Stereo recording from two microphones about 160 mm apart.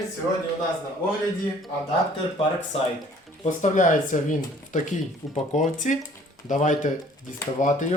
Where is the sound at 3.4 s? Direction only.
50° left (ahead or behind).